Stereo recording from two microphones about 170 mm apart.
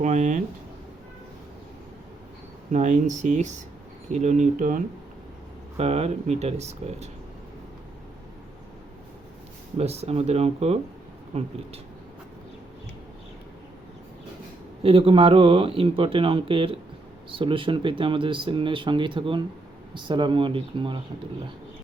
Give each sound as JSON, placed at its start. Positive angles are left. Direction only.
{"t": 0.0, "sound": "speech", "side_deg": -45}
{"t": 2.7, "sound": "speech", "side_deg": -45}
{"t": 5.7, "sound": "speech", "side_deg": -40}
{"t": 9.7, "sound": "speech", "side_deg": -40}
{"t": 14.8, "sound": "speech", "side_deg": -35}